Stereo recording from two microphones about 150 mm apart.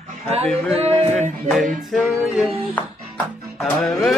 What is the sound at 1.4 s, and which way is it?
Music, centre (ahead or behind).